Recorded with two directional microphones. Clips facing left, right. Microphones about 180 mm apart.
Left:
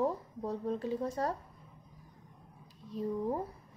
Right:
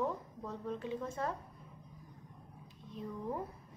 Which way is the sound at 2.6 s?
35° left (ahead or behind).